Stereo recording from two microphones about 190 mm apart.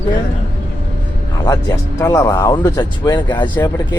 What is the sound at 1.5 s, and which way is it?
Speech, 15° left (ahead or behind).